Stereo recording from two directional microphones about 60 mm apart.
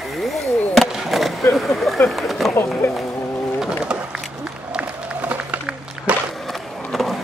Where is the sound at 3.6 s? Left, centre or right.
Centre.